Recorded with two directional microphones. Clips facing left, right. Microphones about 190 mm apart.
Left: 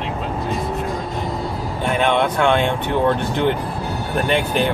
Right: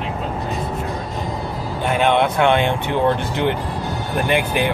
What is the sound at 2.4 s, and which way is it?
Speech, 15° right (ahead or behind).